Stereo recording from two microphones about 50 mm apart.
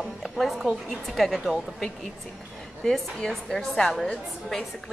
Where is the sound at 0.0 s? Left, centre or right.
Centre.